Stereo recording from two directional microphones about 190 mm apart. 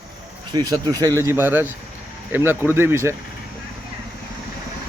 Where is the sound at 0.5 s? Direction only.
20° right (ahead or behind).